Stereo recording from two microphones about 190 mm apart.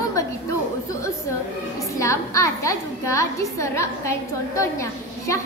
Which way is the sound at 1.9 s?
15° left (ahead or behind).